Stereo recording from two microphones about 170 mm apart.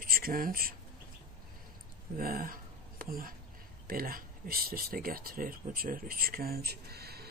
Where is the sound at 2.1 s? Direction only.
60° right (ahead or behind).